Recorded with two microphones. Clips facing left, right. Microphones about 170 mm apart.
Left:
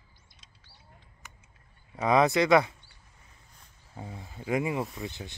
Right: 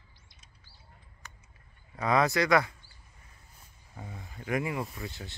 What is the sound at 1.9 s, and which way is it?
Speech, 20° left (ahead or behind).